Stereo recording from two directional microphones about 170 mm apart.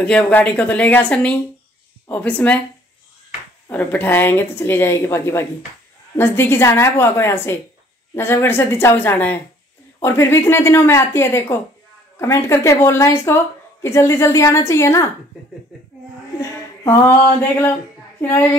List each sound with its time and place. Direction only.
0.0 s speech: 10° left (ahead or behind)
3.6 s speech: 10° left (ahead or behind)
17.4 s speech: 10° left (ahead or behind)